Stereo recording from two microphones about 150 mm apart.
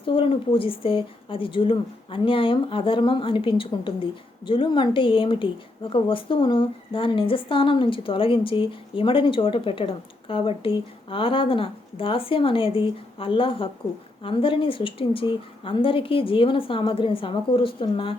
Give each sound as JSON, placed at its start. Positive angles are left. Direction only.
{"t": 0.0, "sound": "speech", "side_deg": 35}